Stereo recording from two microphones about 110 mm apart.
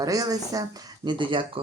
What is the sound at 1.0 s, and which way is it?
Speech, 45° right (ahead or behind).